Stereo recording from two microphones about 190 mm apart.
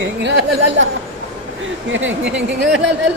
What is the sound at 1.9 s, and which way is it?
Speech, 85° right.